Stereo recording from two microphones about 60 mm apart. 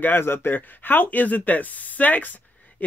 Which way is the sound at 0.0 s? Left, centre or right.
Left.